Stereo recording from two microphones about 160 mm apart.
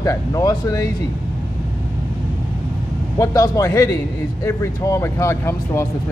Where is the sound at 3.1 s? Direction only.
20° left (ahead or behind).